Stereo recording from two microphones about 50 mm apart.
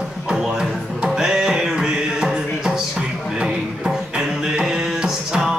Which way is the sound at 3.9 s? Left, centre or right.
Centre.